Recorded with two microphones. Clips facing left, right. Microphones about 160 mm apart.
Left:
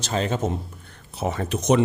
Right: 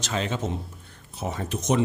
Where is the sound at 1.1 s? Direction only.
75° left (ahead or behind).